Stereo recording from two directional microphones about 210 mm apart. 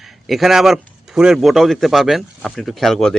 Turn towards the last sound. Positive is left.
turn(degrees=0)  # may be behind; listen again after turning